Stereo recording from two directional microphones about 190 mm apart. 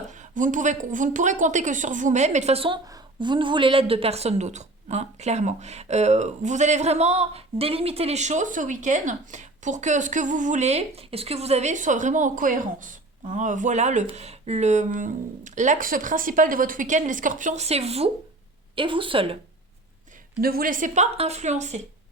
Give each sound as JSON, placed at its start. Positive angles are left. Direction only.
{"t": 0.1, "sound": "a woman's voice", "side_deg": -40}
{"t": 20.4, "sound": "a woman's voice", "side_deg": -50}